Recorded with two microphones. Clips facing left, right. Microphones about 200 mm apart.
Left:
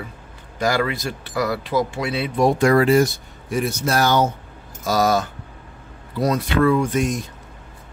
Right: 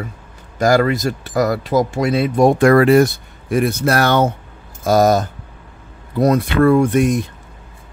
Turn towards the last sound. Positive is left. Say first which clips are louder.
# right 6 dB
turn(degrees=-55)  # may be behind; listen again after turning